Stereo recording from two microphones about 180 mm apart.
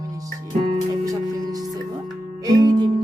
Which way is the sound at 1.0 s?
20° right (ahead or behind).